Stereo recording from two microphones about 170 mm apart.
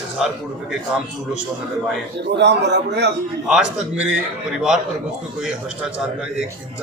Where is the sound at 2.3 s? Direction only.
90° right.